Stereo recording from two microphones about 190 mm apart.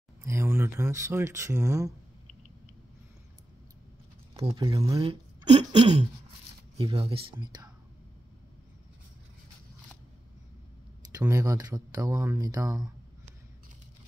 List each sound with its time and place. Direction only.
0.2 s speech: 15° right (ahead or behind)
4.3 s speech: 30° right (ahead or behind)
11.1 s speech: 15° right (ahead or behind)